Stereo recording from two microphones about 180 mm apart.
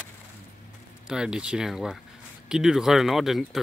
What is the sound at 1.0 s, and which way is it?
Speech, 5° right (ahead or behind).